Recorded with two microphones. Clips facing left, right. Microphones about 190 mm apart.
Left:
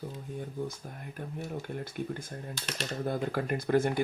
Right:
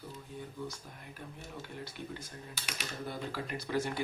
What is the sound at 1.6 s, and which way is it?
Speech, 50° left (ahead or behind).